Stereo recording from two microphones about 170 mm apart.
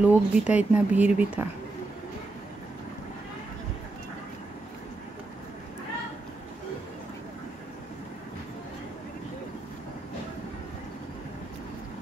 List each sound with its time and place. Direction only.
0.0 s speech: 10° right (ahead or behind)